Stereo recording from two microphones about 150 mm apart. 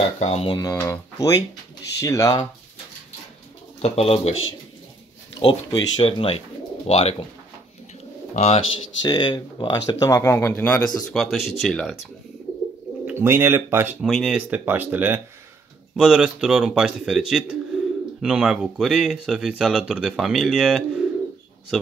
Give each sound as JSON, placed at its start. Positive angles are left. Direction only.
{"t": 0.2, "sound": "speech", "side_deg": 45}
{"t": 0.5, "sound": "speech", "side_deg": 25}
{"t": 3.8, "sound": "speech", "side_deg": 40}
{"t": 5.4, "sound": "speech", "side_deg": 30}
{"t": 8.4, "sound": "speech", "side_deg": 40}
{"t": 13.0, "sound": "speech", "side_deg": -15}
{"t": 14.0, "sound": "speech", "side_deg": 0}
{"t": 14.5, "sound": "speech", "side_deg": -10}